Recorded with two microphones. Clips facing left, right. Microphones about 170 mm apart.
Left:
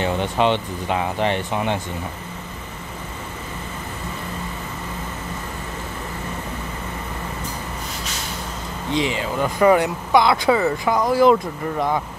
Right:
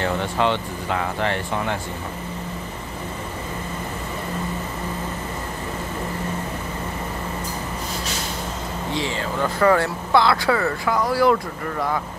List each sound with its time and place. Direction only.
0.0 s speech: 20° left (ahead or behind)
8.9 s speech: 15° left (ahead or behind)